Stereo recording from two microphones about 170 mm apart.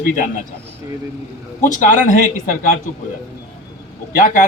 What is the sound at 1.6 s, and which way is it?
Speech, 50° left (ahead or behind).